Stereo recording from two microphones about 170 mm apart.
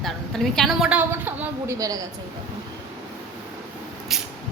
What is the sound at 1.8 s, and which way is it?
Speech, 20° right (ahead or behind).